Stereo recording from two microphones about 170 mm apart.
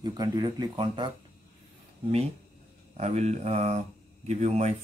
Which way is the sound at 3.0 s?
40° right (ahead or behind).